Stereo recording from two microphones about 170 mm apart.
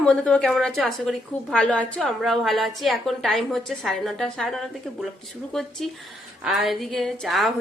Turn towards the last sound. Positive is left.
turn(degrees=0)  # may be behind; listen again after turning